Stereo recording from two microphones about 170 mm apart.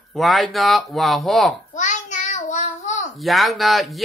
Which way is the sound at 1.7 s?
45° left (ahead or behind).